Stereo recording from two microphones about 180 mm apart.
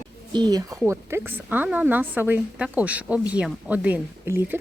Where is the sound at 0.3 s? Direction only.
20° right (ahead or behind).